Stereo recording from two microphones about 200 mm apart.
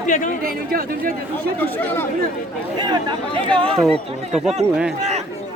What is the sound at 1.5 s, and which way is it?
Speech, 10° left (ahead or behind).